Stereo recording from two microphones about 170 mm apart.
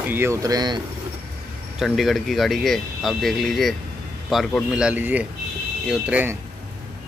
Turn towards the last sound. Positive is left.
turn(degrees=-10)  # may be behind; listen again after turning